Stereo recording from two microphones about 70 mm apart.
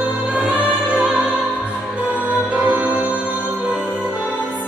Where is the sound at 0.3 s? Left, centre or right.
Centre.